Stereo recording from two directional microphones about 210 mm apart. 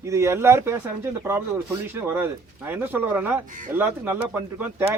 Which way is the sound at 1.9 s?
10° right (ahead or behind).